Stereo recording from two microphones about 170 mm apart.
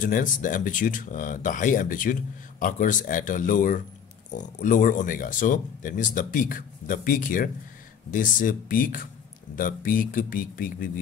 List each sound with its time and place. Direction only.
0.0 s speech: 50° left (ahead or behind)